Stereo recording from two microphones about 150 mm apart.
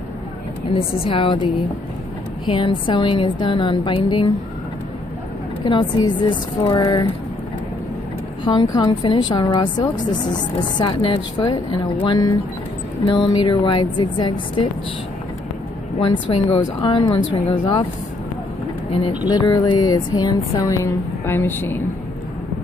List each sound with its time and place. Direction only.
1.0 s a woman's voice: 35° left (ahead or behind)
2.5 s a woman's voice: 35° left (ahead or behind)
5.7 s a woman's voice: 30° left (ahead or behind)
8.5 s a woman's voice: 25° left (ahead or behind)
16.0 s a woman's voice: 40° left (ahead or behind)
19.2 s a woman's voice: 30° left (ahead or behind)